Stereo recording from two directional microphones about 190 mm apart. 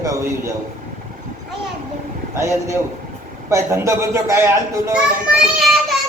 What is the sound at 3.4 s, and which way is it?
A man's voice, 15° right (ahead or behind).